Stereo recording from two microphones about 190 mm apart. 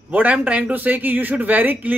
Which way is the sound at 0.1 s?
10° right (ahead or behind).